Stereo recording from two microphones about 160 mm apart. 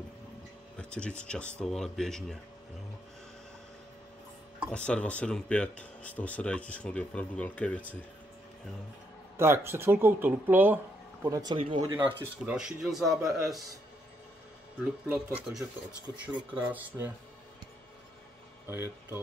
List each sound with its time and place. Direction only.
0.7 s speech: 5° left (ahead or behind)
4.6 s speech: 5° left (ahead or behind)
9.4 s speech: 15° right (ahead or behind)
11.5 s speech: 35° right (ahead or behind)
12.2 s speech: 5° right (ahead or behind)
15.0 s speech: 5° right (ahead or behind)
18.7 s speech: 15° right (ahead or behind)